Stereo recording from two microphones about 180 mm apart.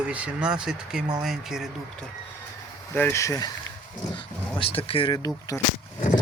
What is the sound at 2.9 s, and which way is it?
Speech, 15° left (ahead or behind).